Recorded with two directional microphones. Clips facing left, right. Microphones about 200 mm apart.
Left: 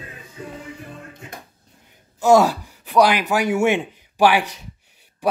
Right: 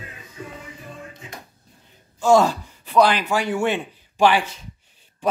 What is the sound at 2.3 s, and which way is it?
A man's voice, 10° left (ahead or behind).